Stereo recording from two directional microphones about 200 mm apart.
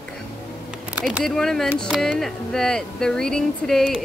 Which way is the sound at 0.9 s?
5° right (ahead or behind).